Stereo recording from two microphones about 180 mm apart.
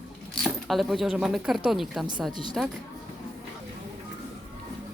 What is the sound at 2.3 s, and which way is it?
Speech, 25° right (ahead or behind).